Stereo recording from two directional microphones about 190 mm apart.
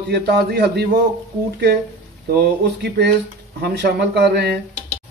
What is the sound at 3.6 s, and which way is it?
Speech, 65° right (ahead or behind).